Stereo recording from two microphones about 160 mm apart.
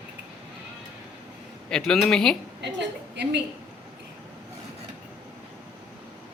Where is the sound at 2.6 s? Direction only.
90° right.